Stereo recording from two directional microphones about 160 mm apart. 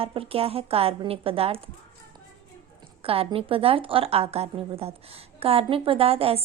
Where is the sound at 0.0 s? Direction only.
35° right (ahead or behind).